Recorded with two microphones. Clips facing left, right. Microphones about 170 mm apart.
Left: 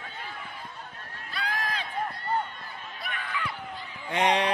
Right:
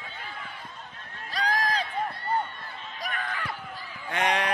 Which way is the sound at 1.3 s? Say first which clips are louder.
Right 5 dB; 40° right (ahead or behind).